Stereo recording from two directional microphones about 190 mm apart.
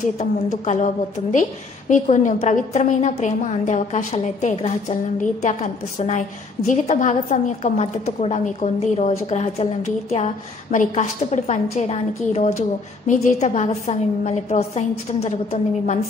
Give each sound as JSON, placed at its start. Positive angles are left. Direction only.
{"t": 0.0, "sound": "a woman's voice", "side_deg": 35}